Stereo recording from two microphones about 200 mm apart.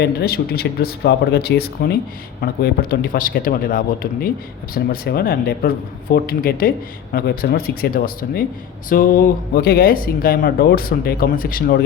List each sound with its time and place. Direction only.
0.0 s speech: 55° left (ahead or behind)